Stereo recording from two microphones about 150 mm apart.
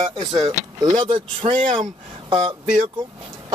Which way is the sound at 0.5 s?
25° right (ahead or behind).